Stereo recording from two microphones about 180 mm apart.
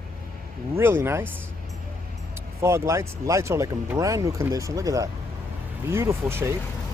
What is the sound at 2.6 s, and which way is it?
Speech, 15° right (ahead or behind).